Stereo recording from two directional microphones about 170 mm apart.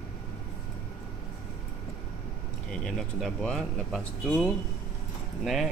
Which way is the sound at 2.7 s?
Centre (ahead or behind).